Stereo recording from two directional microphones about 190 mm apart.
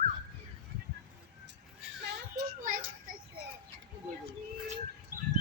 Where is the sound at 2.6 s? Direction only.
45° right (ahead or behind).